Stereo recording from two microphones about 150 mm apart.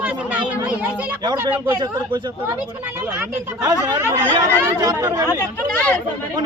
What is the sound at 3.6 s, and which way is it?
Speech, 25° right (ahead or behind).